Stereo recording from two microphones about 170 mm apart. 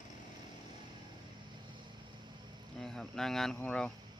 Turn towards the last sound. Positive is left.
turn(degrees=5)  # may be behind; listen again after turning